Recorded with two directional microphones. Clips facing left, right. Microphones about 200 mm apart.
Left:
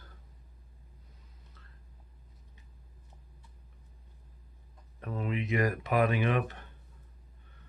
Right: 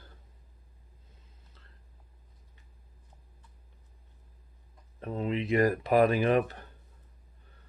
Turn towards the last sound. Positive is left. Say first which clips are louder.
# right 4 dB
turn(degrees=-35)  # may be behind; listen again after turning